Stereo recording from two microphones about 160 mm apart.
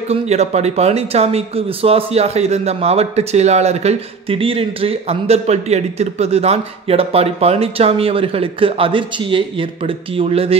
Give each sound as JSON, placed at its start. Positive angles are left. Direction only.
{"t": 0.1, "sound": "speech", "side_deg": -40}